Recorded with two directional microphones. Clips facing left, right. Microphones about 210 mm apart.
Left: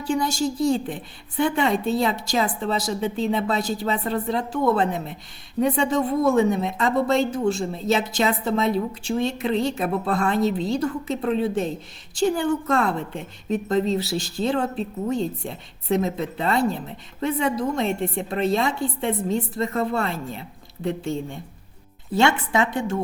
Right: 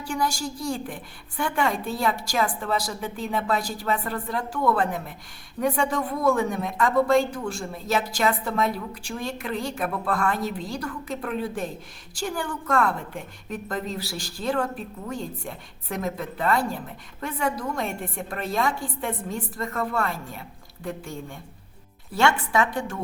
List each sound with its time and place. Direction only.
0.0 s a woman's voice: 20° left (ahead or behind)